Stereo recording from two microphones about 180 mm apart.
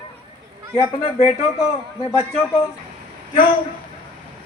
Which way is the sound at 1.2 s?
35° left (ahead or behind).